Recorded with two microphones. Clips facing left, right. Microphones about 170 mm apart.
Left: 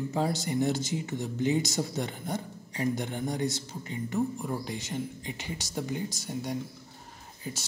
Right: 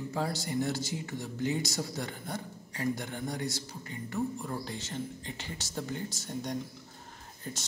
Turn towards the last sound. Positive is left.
turn(degrees=5)  # may be behind; listen again after turning